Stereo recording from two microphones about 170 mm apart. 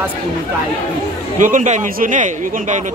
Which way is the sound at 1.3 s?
50° right (ahead or behind).